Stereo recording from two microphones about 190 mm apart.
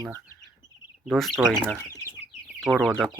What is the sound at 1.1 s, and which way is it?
Speech, centre (ahead or behind).